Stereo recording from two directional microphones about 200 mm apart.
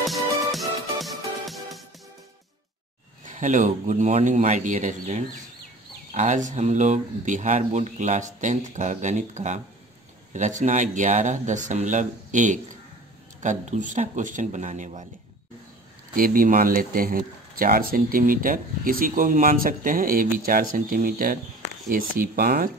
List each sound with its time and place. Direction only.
0.0 s music: centre (ahead or behind)
3.3 s speech: 40° right (ahead or behind)
16.2 s speech: 45° right (ahead or behind)